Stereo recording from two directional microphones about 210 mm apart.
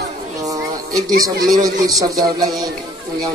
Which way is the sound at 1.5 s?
15° right (ahead or behind).